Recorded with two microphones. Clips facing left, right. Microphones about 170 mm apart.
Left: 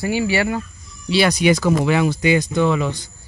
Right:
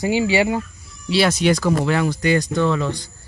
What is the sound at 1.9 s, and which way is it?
Speech, 15° left (ahead or behind).